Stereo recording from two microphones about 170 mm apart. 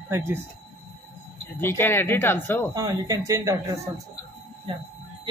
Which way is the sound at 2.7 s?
20° right (ahead or behind).